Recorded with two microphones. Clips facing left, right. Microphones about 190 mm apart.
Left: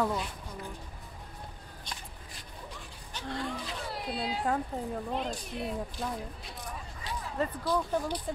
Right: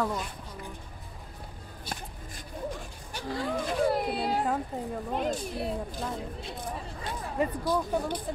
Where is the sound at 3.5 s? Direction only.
50° right (ahead or behind).